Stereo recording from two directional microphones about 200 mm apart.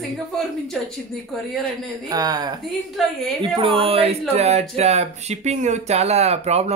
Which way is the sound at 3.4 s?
25° right (ahead or behind).